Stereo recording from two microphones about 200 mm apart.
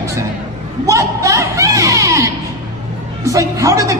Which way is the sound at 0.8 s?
15° right (ahead or behind).